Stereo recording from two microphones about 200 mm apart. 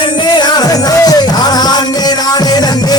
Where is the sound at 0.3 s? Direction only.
20° left (ahead or behind).